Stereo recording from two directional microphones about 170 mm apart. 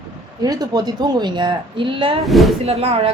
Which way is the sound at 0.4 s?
25° right (ahead or behind).